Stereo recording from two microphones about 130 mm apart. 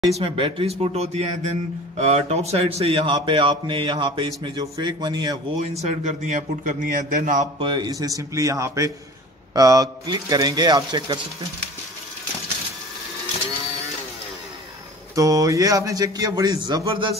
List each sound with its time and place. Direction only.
0.2 s a man's voice: 45° right (ahead or behind)
5.6 s a man's voice: 55° right (ahead or behind); by 7.4 s 90° right
7.5 s a man's voice: 40° right (ahead or behind)
15.1 s a man's voice: 25° right (ahead or behind)